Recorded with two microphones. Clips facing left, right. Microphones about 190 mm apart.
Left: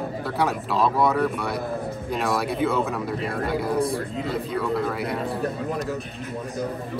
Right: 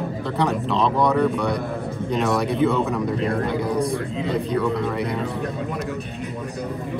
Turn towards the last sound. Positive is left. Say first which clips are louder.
# right 2 dB
turn(degrees=5)  # may be behind; listen again after turning